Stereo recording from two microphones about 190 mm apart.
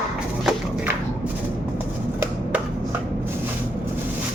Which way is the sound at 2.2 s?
10° right (ahead or behind).